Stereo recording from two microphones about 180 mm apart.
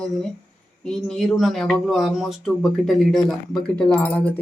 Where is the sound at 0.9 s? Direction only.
5° left (ahead or behind).